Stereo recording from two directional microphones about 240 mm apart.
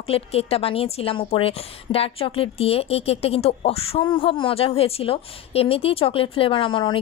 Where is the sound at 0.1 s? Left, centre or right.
Left.